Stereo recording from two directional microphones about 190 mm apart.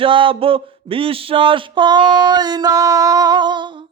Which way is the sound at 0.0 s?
25° right (ahead or behind).